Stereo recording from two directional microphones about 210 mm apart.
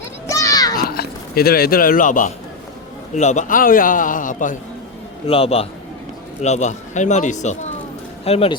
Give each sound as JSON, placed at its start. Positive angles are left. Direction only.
{"t": 0.3, "sound": "children playing", "side_deg": 15}
{"t": 0.8, "sound": "a man's voice", "side_deg": 45}
{"t": 5.3, "sound": "a man's voice", "side_deg": 30}